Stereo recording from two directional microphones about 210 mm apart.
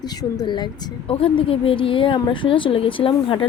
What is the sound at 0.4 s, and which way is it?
A woman's voice, 20° left (ahead or behind).